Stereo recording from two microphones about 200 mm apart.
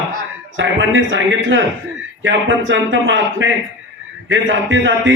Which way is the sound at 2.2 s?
70° right (ahead or behind).